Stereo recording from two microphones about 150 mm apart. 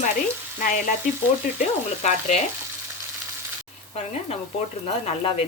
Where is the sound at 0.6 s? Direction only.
60° left (ahead or behind).